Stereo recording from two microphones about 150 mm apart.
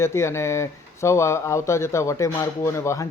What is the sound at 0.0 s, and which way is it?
Speech, 15° left (ahead or behind).